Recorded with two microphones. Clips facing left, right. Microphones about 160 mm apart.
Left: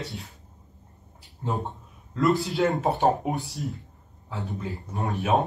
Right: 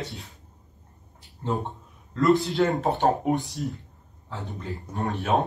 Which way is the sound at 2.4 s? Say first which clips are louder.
Right 1 dB; centre (ahead or behind).